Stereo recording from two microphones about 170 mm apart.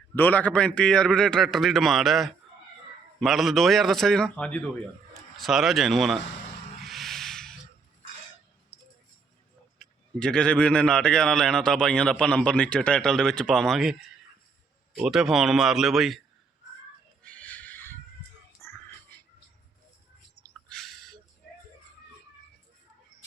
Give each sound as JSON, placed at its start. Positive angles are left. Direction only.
{"t": 0.2, "sound": "a man's voice", "side_deg": 10}
{"t": 6.8, "sound": "a sound", "side_deg": 0}
{"t": 9.7, "sound": "a man's voice", "side_deg": 5}
{"t": 14.9, "sound": "a man's voice", "side_deg": -5}
{"t": 17.2, "sound": "neigh", "side_deg": 10}
{"t": 18.6, "sound": "whispering", "side_deg": 15}
{"t": 20.4, "sound": "a sound", "side_deg": 5}